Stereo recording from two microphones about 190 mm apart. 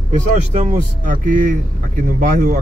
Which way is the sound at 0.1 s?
35° right (ahead or behind).